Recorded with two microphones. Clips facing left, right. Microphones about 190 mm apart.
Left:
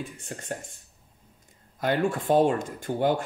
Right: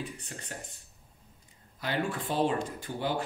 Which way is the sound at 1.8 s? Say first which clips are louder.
Left 7 dB; 50° left (ahead or behind).